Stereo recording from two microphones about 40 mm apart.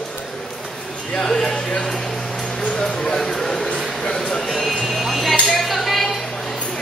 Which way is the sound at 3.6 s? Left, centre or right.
Left.